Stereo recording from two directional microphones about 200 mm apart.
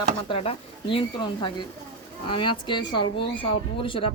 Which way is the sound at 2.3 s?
25° left (ahead or behind).